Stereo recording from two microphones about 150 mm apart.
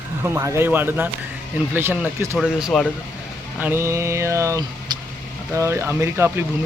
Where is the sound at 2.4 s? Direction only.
5° right (ahead or behind).